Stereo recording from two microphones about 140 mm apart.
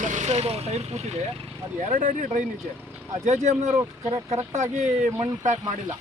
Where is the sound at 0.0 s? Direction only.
60° right (ahead or behind).